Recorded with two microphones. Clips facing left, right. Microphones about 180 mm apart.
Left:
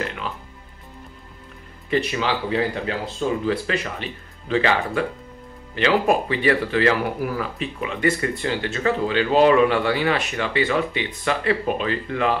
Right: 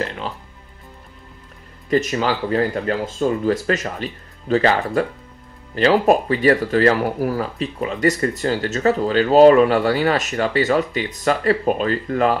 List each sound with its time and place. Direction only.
0.0 s music: 35° right (ahead or behind)
1.9 s speech: 45° right (ahead or behind)